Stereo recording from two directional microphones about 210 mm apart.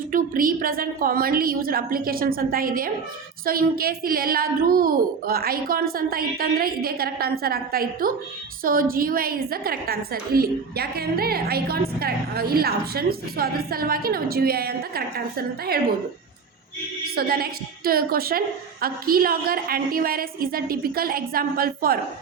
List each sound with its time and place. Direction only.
0.1 s a woman's voice: 40° right (ahead or behind)
17.2 s a woman's voice: 45° right (ahead or behind)